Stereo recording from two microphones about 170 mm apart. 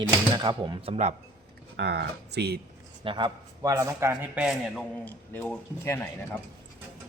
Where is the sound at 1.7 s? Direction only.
80° right.